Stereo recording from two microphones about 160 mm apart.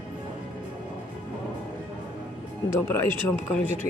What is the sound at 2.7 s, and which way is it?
Speech, 15° left (ahead or behind).